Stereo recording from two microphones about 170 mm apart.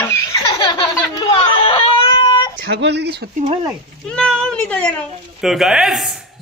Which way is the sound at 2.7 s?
85° right.